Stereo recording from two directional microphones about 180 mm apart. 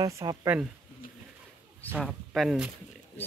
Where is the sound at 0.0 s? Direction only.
20° right (ahead or behind).